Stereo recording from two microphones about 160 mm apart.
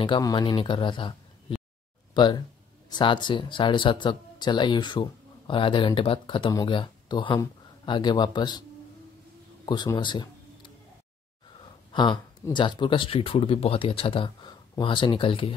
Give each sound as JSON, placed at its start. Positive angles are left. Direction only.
{"t": 0.0, "sound": "speech", "side_deg": 30}
{"t": 9.7, "sound": "speech", "side_deg": 25}
{"t": 11.9, "sound": "speech", "side_deg": 30}